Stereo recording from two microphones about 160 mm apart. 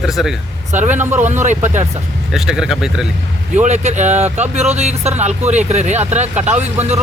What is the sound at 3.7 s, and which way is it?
Speech, 45° right (ahead or behind).